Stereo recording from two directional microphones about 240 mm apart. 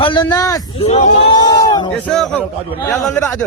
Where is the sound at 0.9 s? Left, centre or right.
Left.